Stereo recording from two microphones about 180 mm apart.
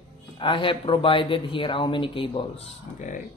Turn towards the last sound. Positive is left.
turn(degrees=40)  # may be behind; listen again after turning